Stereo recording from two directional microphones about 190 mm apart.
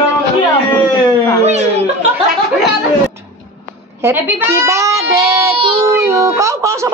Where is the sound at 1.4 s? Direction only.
35° right (ahead or behind).